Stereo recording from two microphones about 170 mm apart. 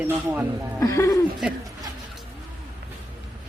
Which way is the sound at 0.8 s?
20° left (ahead or behind).